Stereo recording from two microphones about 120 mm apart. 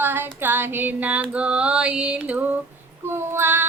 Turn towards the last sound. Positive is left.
turn(degrees=-20)  # may be behind; listen again after turning